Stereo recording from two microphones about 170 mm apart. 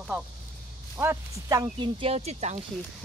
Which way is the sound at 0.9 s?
20° right (ahead or behind).